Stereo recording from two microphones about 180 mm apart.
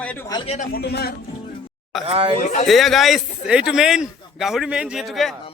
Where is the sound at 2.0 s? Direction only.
30° right (ahead or behind).